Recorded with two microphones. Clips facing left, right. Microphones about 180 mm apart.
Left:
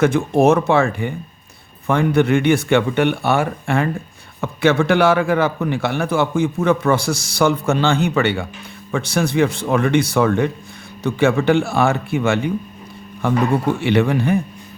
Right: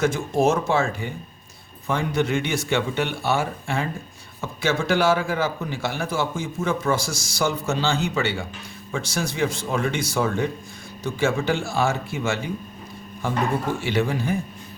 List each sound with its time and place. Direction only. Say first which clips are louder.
0.0 s a man's voice: left 6 dB; 60° left (ahead or behind)